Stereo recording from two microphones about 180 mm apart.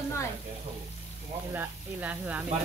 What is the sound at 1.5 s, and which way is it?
Speech, 10° right (ahead or behind).